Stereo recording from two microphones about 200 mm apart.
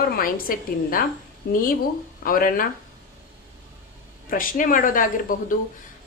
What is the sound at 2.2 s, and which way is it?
Speech, 45° left (ahead or behind).